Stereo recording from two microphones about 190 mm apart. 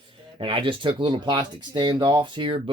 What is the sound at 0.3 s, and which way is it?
Speech, 30° right (ahead or behind).